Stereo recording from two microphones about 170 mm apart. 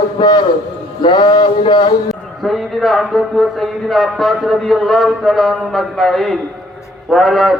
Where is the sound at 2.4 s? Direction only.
Centre (ahead or behind).